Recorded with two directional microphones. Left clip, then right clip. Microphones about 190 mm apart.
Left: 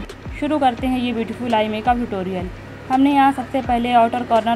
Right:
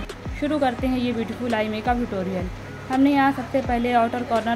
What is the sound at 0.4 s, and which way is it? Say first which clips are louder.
A woman's voice: left 4 dB; centre (ahead or behind).